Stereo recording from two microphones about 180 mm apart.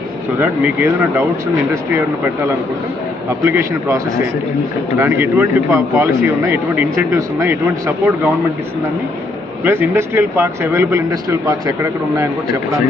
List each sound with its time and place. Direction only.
0.3 s speech: 10° right (ahead or behind)
3.4 s speech: 15° right (ahead or behind)
9.6 s speech: 10° right (ahead or behind)